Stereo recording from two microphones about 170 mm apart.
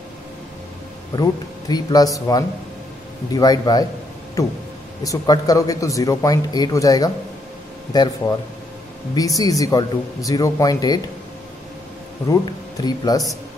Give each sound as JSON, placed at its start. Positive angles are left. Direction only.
{"t": 1.1, "sound": "speech", "side_deg": 25}
{"t": 9.1, "sound": "speech", "side_deg": 20}
{"t": 12.3, "sound": "speech", "side_deg": 25}